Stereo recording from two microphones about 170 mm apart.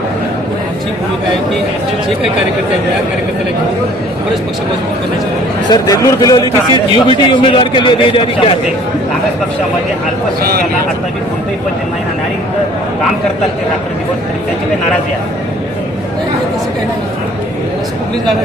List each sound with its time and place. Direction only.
5.7 s a man's voice: 20° left (ahead or behind)